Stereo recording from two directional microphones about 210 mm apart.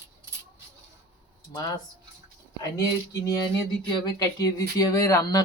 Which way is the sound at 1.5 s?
20° left (ahead or behind).